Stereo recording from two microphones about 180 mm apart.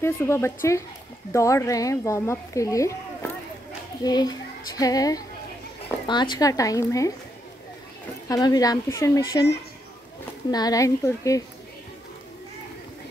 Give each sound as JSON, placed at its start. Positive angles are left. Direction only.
{"t": 0.0, "sound": "a woman's voice", "side_deg": 15}
{"t": 8.3, "sound": "a woman's voice", "side_deg": 20}
{"t": 10.5, "sound": "a woman's voice", "side_deg": 20}